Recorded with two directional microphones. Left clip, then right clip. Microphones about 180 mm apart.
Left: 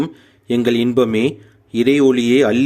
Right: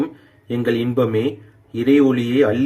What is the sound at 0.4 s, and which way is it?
Speech, 65° left (ahead or behind).